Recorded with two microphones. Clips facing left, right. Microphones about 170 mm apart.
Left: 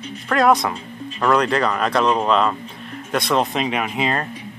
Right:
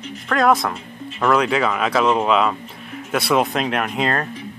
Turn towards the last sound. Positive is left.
turn(degrees=5)  # may be behind; listen again after turning